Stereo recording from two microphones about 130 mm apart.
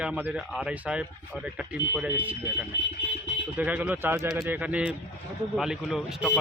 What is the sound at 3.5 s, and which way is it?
Speech, 10° right (ahead or behind).